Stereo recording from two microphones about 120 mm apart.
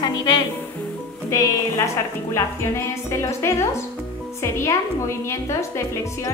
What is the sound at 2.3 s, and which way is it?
A woman's voice, 25° left (ahead or behind).